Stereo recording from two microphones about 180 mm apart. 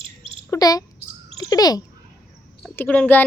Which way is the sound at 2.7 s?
10° left (ahead or behind).